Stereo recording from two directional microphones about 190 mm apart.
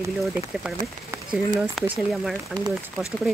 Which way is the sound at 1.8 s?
5° right (ahead or behind).